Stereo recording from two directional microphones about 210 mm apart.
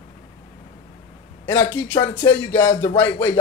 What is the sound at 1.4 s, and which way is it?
Speech, 10° left (ahead or behind).